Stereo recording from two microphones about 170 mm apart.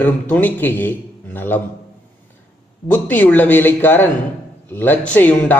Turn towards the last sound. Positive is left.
turn(degrees=10)  # may be behind; listen again after turning